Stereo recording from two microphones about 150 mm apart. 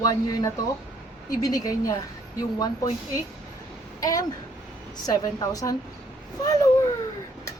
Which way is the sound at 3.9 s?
25° left (ahead or behind).